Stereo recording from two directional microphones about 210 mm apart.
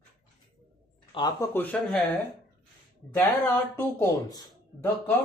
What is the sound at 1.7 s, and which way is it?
Speech, 5° left (ahead or behind).